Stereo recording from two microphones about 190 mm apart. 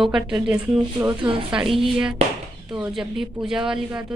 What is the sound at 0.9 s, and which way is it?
Speech, 25° right (ahead or behind).